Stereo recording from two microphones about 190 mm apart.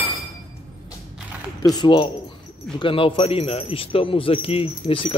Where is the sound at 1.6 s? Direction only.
25° left (ahead or behind).